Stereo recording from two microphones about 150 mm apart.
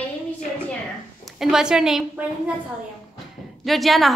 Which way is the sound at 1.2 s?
5° right (ahead or behind).